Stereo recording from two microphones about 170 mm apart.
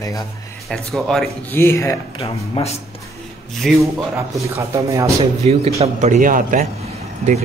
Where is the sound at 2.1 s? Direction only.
35° left (ahead or behind).